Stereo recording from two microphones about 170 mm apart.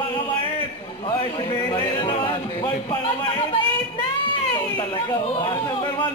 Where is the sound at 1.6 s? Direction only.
30° left (ahead or behind).